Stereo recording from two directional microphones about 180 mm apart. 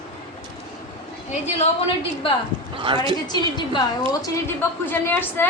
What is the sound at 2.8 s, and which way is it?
Speech, 25° right (ahead or behind).